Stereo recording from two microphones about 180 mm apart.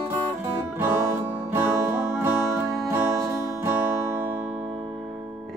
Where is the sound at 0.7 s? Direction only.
15° right (ahead or behind).